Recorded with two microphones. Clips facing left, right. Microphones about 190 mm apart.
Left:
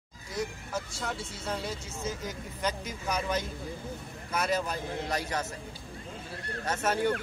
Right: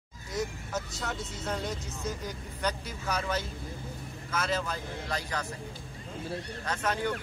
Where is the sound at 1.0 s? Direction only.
Centre (ahead or behind); by 5.5 s 20° left (ahead or behind).